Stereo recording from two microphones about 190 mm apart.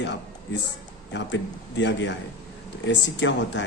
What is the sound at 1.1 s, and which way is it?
Speech, 70° left (ahead or behind).